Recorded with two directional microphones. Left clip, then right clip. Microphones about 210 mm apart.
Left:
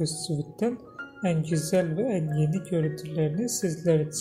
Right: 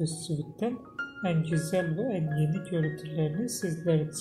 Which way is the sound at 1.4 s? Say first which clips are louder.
Left 2 dB; 70° left (ahead or behind).